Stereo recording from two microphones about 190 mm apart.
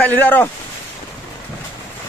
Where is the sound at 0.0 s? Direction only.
10° left (ahead or behind).